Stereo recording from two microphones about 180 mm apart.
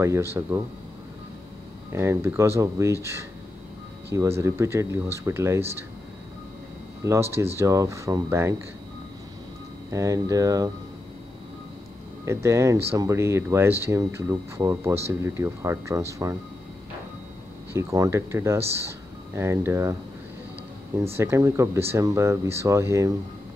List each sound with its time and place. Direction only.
0.0 s speech: 15° right (ahead or behind)
1.9 s speech: 15° right (ahead or behind)
7.1 s speech: 15° right (ahead or behind)
9.8 s speech: 20° right (ahead or behind)
12.3 s speech: 15° right (ahead or behind)
17.7 s speech: 15° right (ahead or behind)
21.2 s speech: 15° right (ahead or behind)